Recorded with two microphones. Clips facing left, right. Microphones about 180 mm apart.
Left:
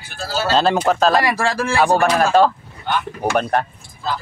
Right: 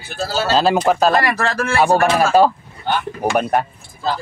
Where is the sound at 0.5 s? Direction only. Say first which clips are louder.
Right 1 dB; centre (ahead or behind).